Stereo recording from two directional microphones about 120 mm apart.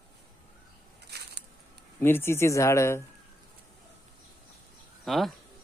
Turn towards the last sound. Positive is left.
turn(degrees=0)  # may be behind; listen again after turning